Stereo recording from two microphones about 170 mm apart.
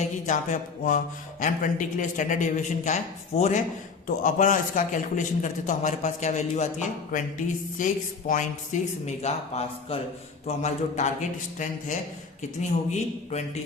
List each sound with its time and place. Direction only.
0.0 s speech: 45° left (ahead or behind)
8.3 s a man's voice: 45° left (ahead or behind)